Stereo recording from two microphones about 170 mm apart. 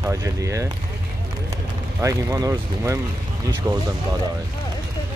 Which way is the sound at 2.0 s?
20° right (ahead or behind).